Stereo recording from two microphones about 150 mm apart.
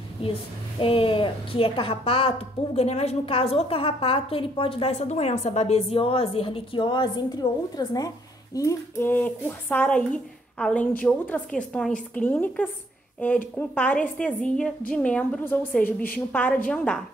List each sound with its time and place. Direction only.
0.2 s a woman's voice: 35° left (ahead or behind); by 17.0 s 5° left (ahead or behind)